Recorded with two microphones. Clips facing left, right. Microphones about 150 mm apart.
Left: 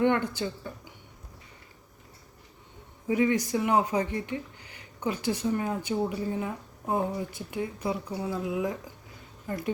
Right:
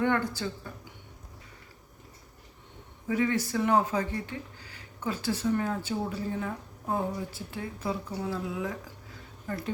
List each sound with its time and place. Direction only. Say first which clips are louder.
0.0 s speech: left 2 dB; 20° left (ahead or behind)
3.1 s speech: left 3 dB; 15° left (ahead or behind)